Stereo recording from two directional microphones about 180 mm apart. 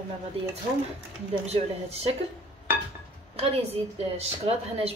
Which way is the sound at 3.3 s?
35° right (ahead or behind).